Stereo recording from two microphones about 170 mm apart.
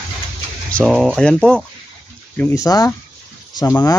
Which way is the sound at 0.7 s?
Centre (ahead or behind).